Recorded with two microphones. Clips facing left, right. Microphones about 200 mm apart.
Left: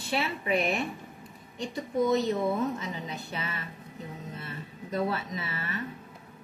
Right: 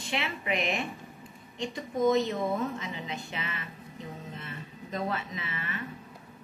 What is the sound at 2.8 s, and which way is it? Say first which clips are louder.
Speech: left 1 dB; 40° left (ahead or behind).